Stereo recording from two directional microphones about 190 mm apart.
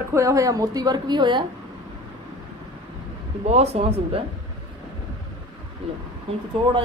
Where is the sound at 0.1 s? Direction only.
15° right (ahead or behind).